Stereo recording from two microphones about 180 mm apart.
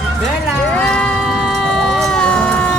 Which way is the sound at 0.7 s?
5° left (ahead or behind).